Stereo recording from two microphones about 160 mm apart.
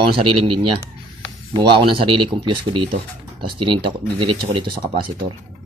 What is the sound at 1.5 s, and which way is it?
Speech, 30° right (ahead or behind).